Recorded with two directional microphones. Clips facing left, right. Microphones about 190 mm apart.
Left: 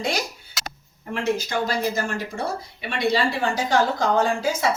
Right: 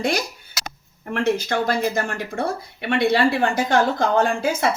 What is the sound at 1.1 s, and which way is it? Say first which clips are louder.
Speech: right 3 dB; 60° right (ahead or behind).